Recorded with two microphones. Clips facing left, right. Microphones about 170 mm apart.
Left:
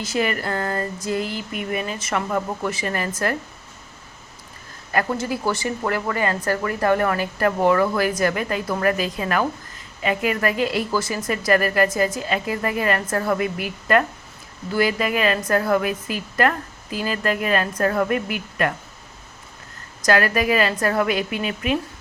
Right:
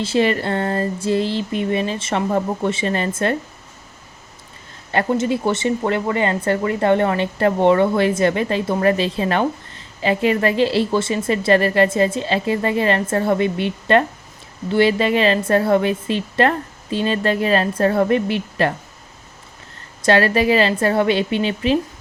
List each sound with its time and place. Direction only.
0.0 s speech: 30° right (ahead or behind)
4.9 s speech: 25° right (ahead or behind)
20.0 s speech: 30° right (ahead or behind)